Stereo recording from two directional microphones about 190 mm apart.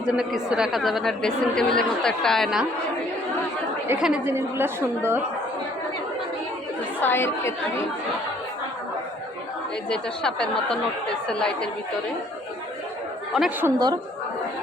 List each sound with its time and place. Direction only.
0.0 s speech: 5° right (ahead or behind)
3.8 s a woman's voice: 10° right (ahead or behind)
7.0 s a woman's voice: 10° left (ahead or behind)
9.9 s speech: 5° left (ahead or behind)
13.3 s speech: centre (ahead or behind)
13.7 s a woman's voice: 20° right (ahead or behind)